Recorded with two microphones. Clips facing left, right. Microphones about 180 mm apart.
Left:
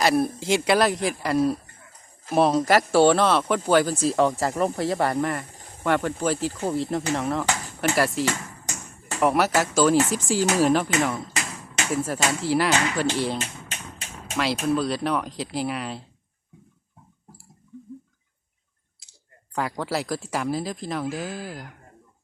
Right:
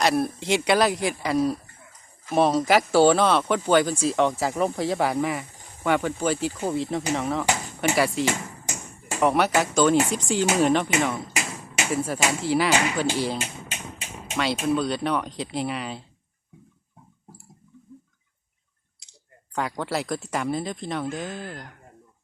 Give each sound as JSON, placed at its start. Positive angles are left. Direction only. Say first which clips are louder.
{"t": 0.0, "sound": "speech", "louder": "left 1 dB", "side_deg": 0}
{"t": 8.2, "sound": "hammer", "louder": "right 1 dB", "side_deg": -15}
{"t": 9.2, "sound": "speech", "louder": "even", "side_deg": 0}
{"t": 11.3, "sound": "a sound", "louder": "right 1 dB", "side_deg": -10}
{"t": 11.9, "sound": "speech", "louder": "even", "side_deg": 0}
{"t": 12.7, "sound": "speech", "louder": "right 1 dB", "side_deg": -20}
{"t": 13.1, "sound": "speech", "louder": "even", "side_deg": 0}
{"t": 13.4, "sound": "a sound", "louder": "right 1 dB", "side_deg": -10}
{"t": 14.3, "sound": "speech", "louder": "even", "side_deg": 0}
{"t": 19.5, "sound": "speech", "louder": "even", "side_deg": 0}